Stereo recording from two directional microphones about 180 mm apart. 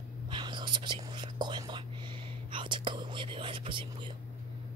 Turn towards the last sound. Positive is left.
turn(degrees=-30)  # may be behind; listen again after turning